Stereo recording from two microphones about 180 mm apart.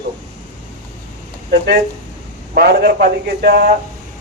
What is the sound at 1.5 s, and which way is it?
A man's voice, 65° right (ahead or behind).